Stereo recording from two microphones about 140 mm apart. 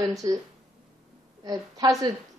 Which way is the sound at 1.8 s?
25° right (ahead or behind).